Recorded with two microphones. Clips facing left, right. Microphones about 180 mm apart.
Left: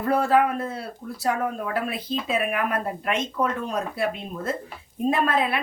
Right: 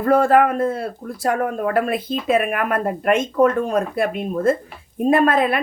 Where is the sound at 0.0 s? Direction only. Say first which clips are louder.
Right 6 dB; 50° right (ahead or behind).